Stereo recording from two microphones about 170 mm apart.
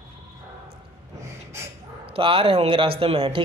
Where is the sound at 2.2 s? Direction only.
35° right (ahead or behind).